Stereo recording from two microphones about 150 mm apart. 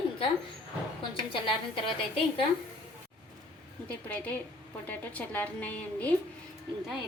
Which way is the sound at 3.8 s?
10° left (ahead or behind).